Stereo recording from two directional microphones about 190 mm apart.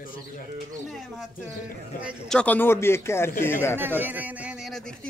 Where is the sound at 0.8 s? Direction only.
Centre (ahead or behind).